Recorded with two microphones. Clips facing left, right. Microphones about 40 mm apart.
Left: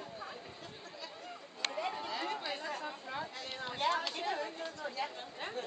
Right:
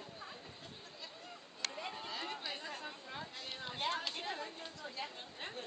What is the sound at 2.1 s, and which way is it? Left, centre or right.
Chatter, centre.